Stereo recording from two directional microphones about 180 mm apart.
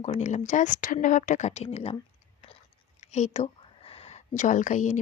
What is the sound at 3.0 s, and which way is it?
A woman's voice, 40° left (ahead or behind).